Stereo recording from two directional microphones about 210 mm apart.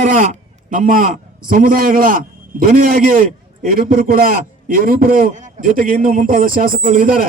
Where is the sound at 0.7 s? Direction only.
40° right (ahead or behind).